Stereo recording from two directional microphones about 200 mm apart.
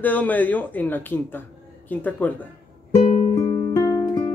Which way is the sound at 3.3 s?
20° left (ahead or behind).